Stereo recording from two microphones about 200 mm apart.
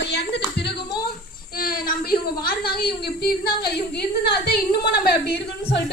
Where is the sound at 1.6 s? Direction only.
45° left (ahead or behind).